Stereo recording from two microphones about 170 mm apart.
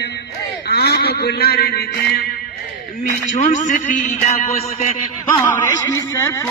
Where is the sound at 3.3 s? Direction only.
45° left (ahead or behind).